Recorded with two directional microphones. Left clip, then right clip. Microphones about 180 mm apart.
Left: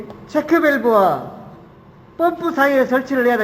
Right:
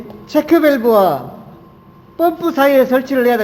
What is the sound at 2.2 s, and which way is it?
A man's voice, 40° right (ahead or behind).